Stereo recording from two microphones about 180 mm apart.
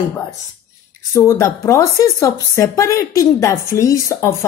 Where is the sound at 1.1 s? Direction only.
15° left (ahead or behind).